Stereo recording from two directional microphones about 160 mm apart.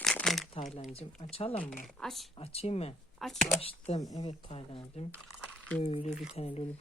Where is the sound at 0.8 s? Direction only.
45° left (ahead or behind).